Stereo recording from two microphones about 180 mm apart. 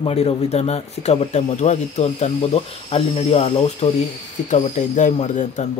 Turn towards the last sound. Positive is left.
turn(degrees=40)  # may be behind; listen again after turning